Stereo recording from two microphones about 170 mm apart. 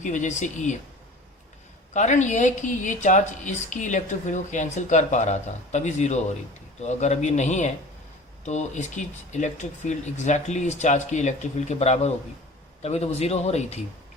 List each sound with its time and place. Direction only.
0.0 s speech: 45° left (ahead or behind)
1.9 s speech: 45° left (ahead or behind)